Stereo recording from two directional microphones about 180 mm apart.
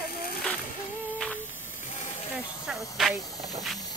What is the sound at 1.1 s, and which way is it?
Humming, 10° left (ahead or behind).